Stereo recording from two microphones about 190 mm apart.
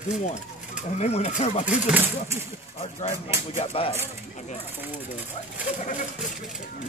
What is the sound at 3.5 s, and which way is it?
Speech, 30° left (ahead or behind).